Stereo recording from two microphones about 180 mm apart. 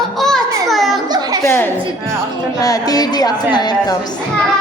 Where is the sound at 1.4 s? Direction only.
10° left (ahead or behind).